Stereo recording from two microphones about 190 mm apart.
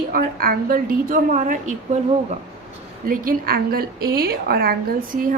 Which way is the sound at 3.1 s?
50° right (ahead or behind).